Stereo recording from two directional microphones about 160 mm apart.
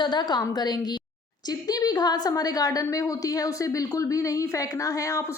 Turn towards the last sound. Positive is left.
turn(degrees=20)  # may be behind; listen again after turning